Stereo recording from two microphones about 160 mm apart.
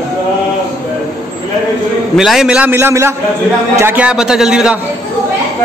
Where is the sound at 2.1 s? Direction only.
Centre (ahead or behind).